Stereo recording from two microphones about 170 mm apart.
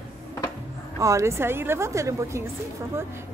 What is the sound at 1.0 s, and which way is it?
Speech, 15° right (ahead or behind).